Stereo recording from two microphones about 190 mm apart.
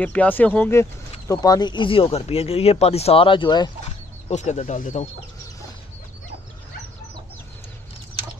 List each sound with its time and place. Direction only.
0.0 s speech: 5° left (ahead or behind); by 3.7 s 25° left (ahead or behind)
4.3 s speech: 40° left (ahead or behind)